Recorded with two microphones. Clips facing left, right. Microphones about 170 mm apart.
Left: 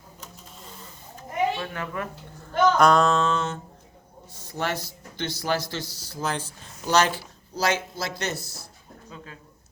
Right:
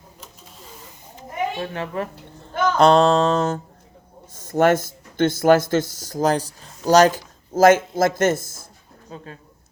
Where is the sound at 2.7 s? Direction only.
30° right (ahead or behind).